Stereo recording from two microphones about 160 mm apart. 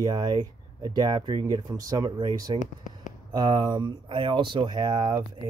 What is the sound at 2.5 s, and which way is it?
Speech, 50° left (ahead or behind).